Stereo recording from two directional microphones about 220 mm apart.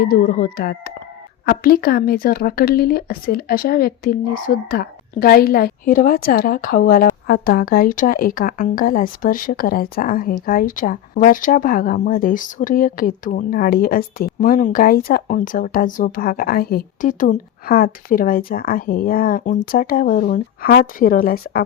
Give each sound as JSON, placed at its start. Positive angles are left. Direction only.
{"t": 0.0, "sound": "speech", "side_deg": 40}